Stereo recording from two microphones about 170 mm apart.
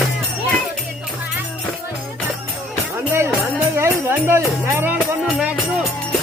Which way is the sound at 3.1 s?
15° right (ahead or behind).